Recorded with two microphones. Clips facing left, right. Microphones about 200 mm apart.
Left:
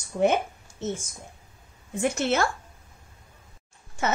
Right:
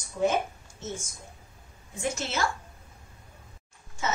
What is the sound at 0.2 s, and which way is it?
Speech, 55° left (ahead or behind).